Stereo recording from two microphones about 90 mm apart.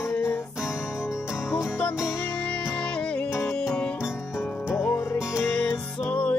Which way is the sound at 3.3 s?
30° left (ahead or behind).